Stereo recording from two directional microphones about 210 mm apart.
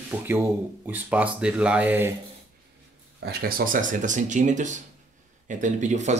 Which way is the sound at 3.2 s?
45° right (ahead or behind).